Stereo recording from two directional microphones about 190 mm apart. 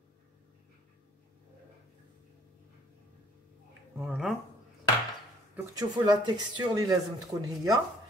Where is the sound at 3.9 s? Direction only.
5° right (ahead or behind).